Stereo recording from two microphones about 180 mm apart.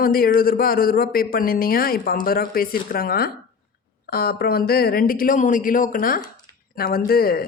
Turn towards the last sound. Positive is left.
turn(degrees=55)  # may be behind; listen again after turning